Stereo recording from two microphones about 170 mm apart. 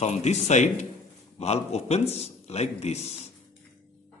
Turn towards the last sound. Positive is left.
turn(degrees=40)  # may be behind; listen again after turning